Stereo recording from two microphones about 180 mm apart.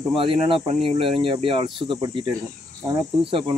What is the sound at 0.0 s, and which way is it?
Speech, 30° right (ahead or behind).